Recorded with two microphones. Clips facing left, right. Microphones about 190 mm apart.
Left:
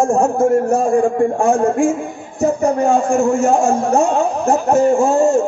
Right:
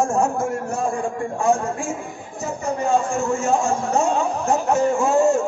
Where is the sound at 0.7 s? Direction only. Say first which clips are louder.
Left 10 dB; 45° left (ahead or behind).